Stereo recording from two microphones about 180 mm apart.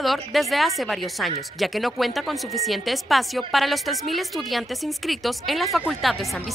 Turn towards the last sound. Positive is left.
turn(degrees=0)  # may be behind; listen again after turning